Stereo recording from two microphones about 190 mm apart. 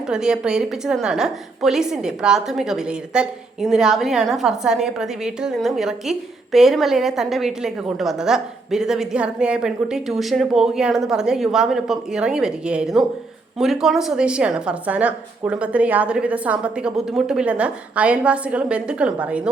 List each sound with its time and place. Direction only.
0.1 s a woman's voice: 5° right (ahead or behind)